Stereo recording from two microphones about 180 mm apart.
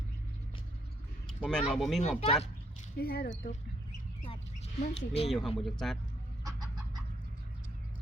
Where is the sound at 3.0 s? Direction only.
55° left (ahead or behind).